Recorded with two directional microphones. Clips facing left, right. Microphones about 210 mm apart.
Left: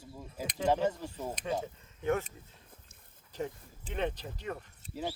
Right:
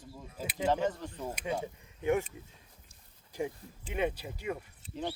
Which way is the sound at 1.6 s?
15° right (ahead or behind).